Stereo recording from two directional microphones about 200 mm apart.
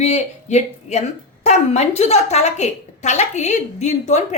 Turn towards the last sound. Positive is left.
turn(degrees=35)  # may be behind; listen again after turning